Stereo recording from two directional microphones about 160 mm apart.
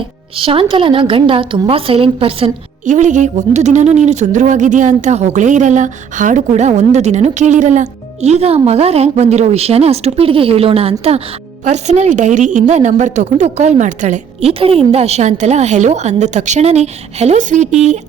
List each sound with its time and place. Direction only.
0.3 s a woman's voice: 35° right (ahead or behind)
2.8 s speech: 50° right (ahead or behind)
14.6 s speech: 35° right (ahead or behind)